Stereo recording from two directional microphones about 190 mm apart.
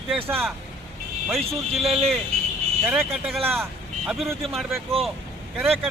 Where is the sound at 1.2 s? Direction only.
Centre (ahead or behind).